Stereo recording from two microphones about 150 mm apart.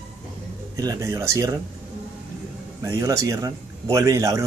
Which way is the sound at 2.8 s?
20° right (ahead or behind).